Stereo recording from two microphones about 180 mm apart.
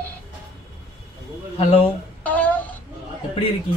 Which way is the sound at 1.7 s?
30° left (ahead or behind).